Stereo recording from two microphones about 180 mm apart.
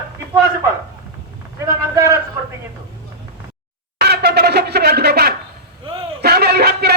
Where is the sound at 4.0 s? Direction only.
65° right (ahead or behind).